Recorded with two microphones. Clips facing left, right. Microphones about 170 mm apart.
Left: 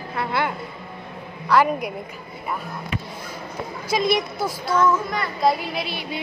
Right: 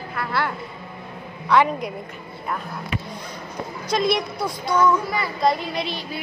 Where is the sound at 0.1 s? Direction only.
20° left (ahead or behind).